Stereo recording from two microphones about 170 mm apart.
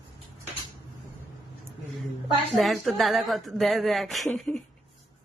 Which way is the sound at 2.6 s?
Centre (ahead or behind).